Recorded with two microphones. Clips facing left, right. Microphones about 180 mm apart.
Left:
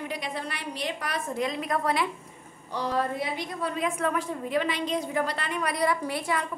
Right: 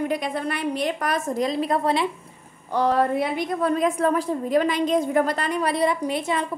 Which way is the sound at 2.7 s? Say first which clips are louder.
Right 8 dB; 60° right (ahead or behind).